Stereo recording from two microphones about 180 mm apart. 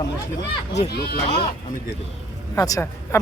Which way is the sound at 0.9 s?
60° left (ahead or behind).